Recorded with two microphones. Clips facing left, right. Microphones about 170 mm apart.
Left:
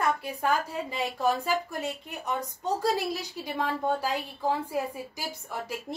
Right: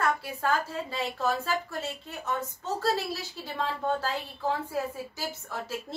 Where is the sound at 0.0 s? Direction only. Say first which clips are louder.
Left 1 dB; 15° left (ahead or behind).